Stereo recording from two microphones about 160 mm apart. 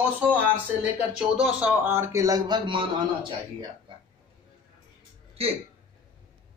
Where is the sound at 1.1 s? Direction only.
5° right (ahead or behind); by 3.3 s 30° right (ahead or behind).